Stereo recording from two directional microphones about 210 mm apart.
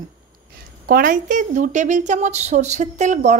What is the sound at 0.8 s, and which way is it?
A woman's voice, 40° right (ahead or behind).